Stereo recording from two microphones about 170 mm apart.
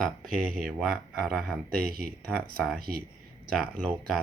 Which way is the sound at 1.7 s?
65° right (ahead or behind).